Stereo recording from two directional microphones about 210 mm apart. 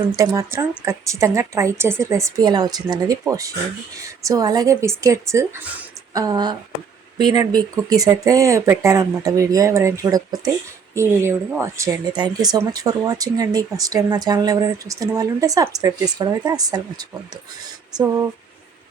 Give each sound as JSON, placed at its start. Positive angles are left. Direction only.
{"t": 0.0, "sound": "speech", "side_deg": -15}